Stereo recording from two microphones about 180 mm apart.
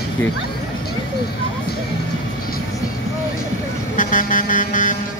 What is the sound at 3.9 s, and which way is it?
Vehicle, 50° left (ahead or behind).